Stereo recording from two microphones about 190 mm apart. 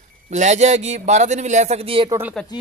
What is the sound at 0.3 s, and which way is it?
A man's voice, 40° right (ahead or behind).